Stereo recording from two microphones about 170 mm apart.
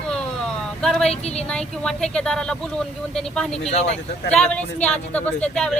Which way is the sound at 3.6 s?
40° left (ahead or behind).